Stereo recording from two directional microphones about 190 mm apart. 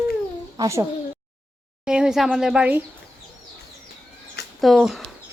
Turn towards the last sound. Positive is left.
turn(degrees=0)  # may be behind; listen again after turning